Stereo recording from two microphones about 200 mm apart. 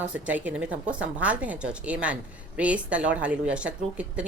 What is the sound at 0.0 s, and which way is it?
Speech, 10° right (ahead or behind).